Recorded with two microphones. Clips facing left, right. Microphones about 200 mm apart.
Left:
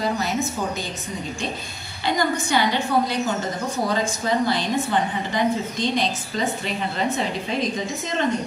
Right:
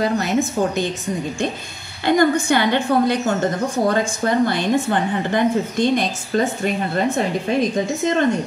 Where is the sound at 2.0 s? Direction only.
55° right (ahead or behind).